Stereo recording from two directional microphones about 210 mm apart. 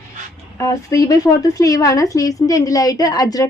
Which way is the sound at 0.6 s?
15° left (ahead or behind).